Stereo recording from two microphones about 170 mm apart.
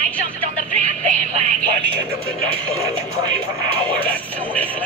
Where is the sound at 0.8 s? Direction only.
45° right (ahead or behind).